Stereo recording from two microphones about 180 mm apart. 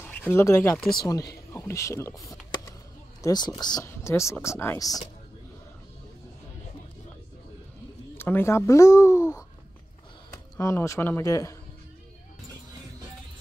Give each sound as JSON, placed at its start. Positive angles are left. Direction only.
{"t": 0.0, "sound": "speech", "side_deg": 10}
{"t": 8.2, "sound": "speech", "side_deg": 10}